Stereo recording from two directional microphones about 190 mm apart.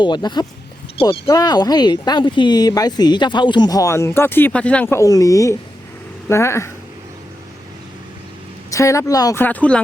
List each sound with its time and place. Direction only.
0.0 s speech: 25° left (ahead or behind)
8.7 s speech: 15° left (ahead or behind)